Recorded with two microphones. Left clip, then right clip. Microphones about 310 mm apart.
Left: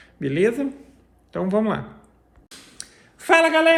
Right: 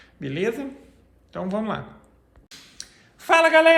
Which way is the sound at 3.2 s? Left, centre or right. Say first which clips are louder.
Right 1 dB; centre.